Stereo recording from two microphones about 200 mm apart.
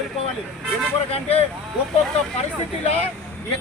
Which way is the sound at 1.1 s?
30° left (ahead or behind).